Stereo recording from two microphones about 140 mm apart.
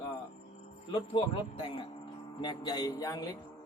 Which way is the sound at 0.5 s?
50° left (ahead or behind).